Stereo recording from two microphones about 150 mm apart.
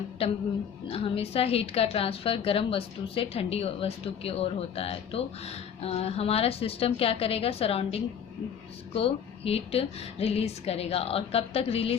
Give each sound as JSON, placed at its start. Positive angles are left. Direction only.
{"t": 0.2, "sound": "a woman's voice", "side_deg": 40}